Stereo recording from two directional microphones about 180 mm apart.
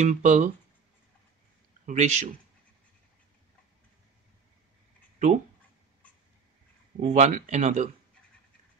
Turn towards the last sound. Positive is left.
turn(degrees=-40)  # may be behind; listen again after turning